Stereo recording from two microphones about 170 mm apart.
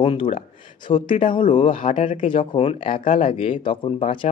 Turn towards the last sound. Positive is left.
turn(degrees=35)  # may be behind; listen again after turning